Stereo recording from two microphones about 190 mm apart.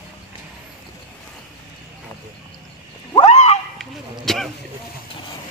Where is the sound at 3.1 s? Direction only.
35° left (ahead or behind).